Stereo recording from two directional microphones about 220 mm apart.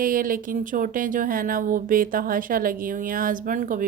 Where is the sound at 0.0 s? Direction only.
40° right (ahead or behind).